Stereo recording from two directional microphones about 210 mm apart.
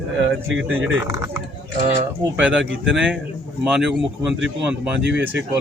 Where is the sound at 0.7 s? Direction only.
10° right (ahead or behind).